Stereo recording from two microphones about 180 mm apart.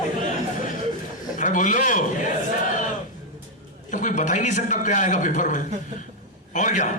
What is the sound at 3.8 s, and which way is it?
A man's voice, 45° left (ahead or behind).